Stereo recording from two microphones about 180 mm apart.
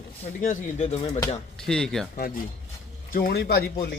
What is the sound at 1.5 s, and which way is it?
Speech, 5° left (ahead or behind).